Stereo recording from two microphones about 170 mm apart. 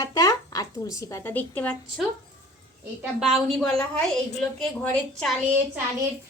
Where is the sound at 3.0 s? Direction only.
Centre (ahead or behind).